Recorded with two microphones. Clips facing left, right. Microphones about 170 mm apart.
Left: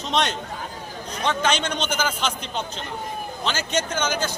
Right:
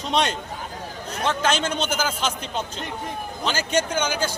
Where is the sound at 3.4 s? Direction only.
10° right (ahead or behind).